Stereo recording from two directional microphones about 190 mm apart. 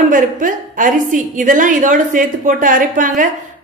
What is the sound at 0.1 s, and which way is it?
A woman's voice, 45° right (ahead or behind).